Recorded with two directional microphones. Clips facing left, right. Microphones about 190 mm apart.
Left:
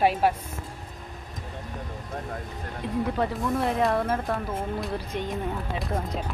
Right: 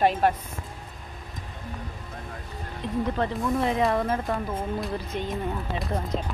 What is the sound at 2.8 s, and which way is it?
Speech, 10° left (ahead or behind).